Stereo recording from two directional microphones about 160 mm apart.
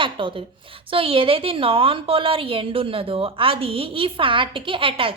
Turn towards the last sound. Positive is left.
turn(degrees=-35)  # may be behind; listen again after turning